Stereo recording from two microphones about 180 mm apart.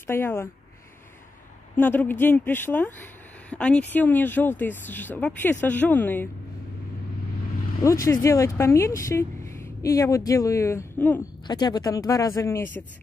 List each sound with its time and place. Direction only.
0.0 s speech: 10° left (ahead or behind)
1.8 s speech: 10° left (ahead or behind)
8.0 s speech: 15° left (ahead or behind)